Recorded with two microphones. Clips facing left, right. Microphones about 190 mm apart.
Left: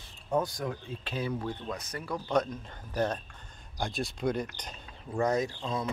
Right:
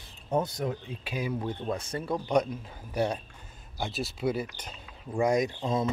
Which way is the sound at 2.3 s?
10° right (ahead or behind).